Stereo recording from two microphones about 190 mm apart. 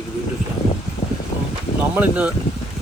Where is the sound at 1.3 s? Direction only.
30° left (ahead or behind).